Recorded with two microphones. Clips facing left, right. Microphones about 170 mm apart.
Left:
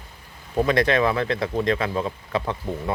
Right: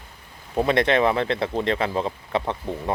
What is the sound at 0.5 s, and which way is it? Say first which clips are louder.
Speech: even; 25° right (ahead or behind).